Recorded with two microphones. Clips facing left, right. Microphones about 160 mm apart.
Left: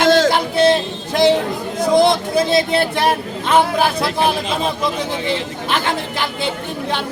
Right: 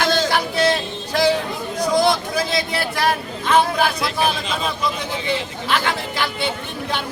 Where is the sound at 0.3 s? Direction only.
25° left (ahead or behind).